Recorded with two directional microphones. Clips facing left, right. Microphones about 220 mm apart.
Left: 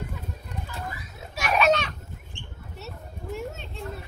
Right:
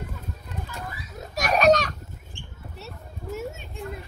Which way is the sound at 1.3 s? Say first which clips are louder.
Right 3 dB; 40° right (ahead or behind).